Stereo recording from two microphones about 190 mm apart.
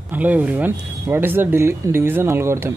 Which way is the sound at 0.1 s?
10° right (ahead or behind).